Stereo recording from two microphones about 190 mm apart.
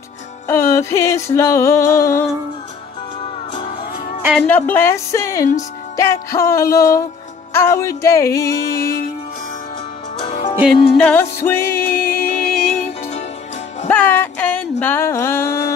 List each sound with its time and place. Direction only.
0.5 s music: 15° left (ahead or behind)
4.5 s music: 10° left (ahead or behind)
8.7 s music: 55° left (ahead or behind)
11.0 s music: 10° left (ahead or behind)
13.8 s a sound: 10° left (ahead or behind)